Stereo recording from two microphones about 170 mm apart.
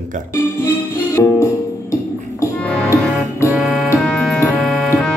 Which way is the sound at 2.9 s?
15° left (ahead or behind).